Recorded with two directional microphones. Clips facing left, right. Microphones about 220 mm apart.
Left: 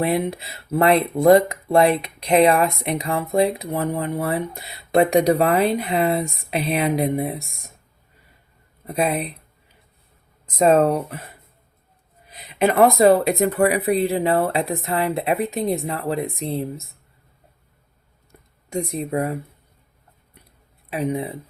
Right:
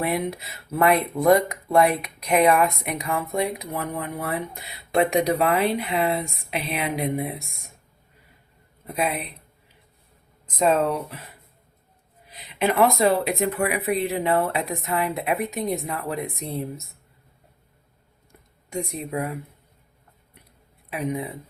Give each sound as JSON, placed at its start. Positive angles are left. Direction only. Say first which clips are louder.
{"t": 0.0, "sound": "speech", "louder": "left 4 dB", "side_deg": 30}
{"t": 9.0, "sound": "speech", "louder": "left 4 dB", "side_deg": 35}
{"t": 10.6, "sound": "speech", "louder": "left 5 dB", "side_deg": 50}
{"t": 12.3, "sound": "speech", "louder": "left 4 dB", "side_deg": 45}
{"t": 18.7, "sound": "speech", "louder": "left 5 dB", "side_deg": 40}
{"t": 20.9, "sound": "speech", "louder": "left 4 dB", "side_deg": 30}